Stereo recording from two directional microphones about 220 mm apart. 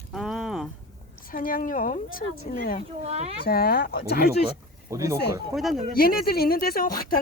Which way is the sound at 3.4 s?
45° left (ahead or behind).